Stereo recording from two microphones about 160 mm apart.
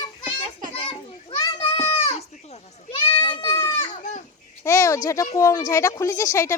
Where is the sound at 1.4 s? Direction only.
35° left (ahead or behind).